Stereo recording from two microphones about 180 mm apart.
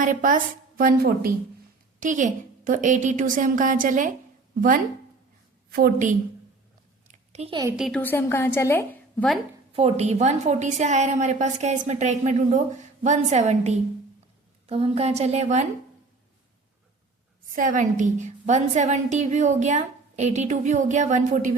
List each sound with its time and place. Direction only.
0.0 s a woman's voice: 45° right (ahead or behind)
5.7 s a woman's voice: 50° right (ahead or behind)
7.1 s a sound: 40° right (ahead or behind)
7.8 s a woman's voice: centre (ahead or behind)
8.0 s a woman's voice: 10° left (ahead or behind)
9.7 s a woman's voice: 35° right (ahead or behind)
17.5 s a woman's voice: 50° right (ahead or behind)